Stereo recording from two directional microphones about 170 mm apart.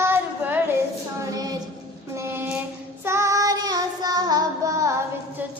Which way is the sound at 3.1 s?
20° right (ahead or behind).